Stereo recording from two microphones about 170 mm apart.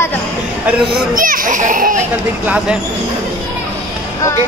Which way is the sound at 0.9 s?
55° right (ahead or behind).